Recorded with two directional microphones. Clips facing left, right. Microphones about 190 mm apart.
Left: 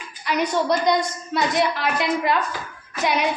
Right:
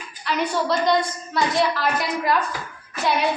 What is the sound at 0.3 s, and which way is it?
A woman's voice, 15° left (ahead or behind).